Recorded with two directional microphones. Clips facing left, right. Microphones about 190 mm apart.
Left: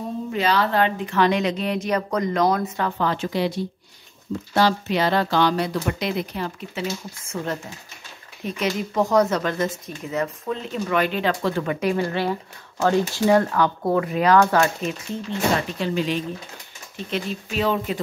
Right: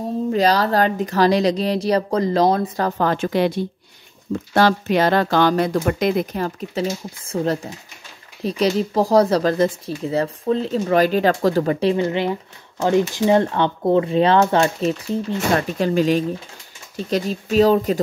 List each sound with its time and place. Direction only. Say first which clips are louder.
0.3 s speech: right 4 dB; 40° right (ahead or behind)
11.9 s speech: right 3 dB; 20° right (ahead or behind)
15.8 s speech: right 6 dB; 45° right (ahead or behind)